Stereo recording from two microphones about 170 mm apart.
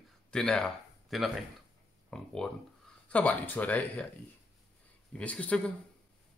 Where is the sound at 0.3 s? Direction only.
5° left (ahead or behind).